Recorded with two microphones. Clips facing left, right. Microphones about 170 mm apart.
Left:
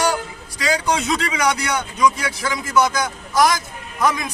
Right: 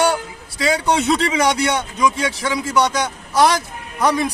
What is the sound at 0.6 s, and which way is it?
A man's voice, 25° right (ahead or behind).